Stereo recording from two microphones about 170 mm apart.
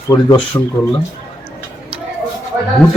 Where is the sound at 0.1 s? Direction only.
25° left (ahead or behind).